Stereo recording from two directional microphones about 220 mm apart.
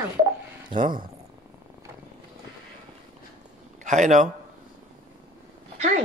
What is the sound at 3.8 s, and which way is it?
Speech, 35° right (ahead or behind).